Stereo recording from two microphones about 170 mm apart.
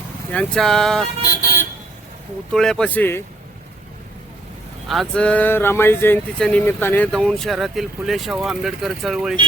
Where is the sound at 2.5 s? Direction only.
5° left (ahead or behind).